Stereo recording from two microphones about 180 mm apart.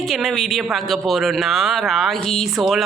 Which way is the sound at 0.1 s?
Centre (ahead or behind).